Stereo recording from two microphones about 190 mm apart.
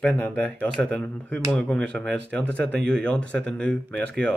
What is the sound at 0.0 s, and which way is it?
Speech, 10° left (ahead or behind).